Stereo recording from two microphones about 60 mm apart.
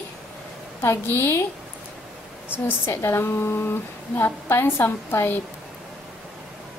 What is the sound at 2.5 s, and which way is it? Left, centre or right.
Speech, left.